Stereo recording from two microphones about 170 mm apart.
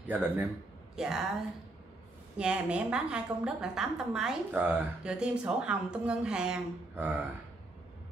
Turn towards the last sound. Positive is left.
turn(degrees=-10)  # may be behind; listen again after turning